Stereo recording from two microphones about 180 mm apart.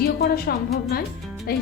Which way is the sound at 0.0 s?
60° left (ahead or behind).